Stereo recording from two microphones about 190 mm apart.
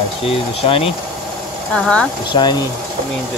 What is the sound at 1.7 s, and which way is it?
Speech, 5° left (ahead or behind).